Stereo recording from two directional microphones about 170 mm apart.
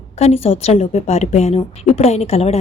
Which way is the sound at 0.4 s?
35° left (ahead or behind).